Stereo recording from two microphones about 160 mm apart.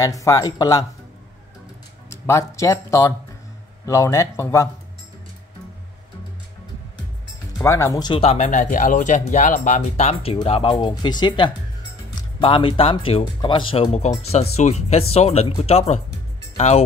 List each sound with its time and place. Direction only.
0.0 s speech: 20° left (ahead or behind)
2.0 s speech: 20° left (ahead or behind)
7.6 s speech: 20° left (ahead or behind)
8.1 s speech: 40° left (ahead or behind)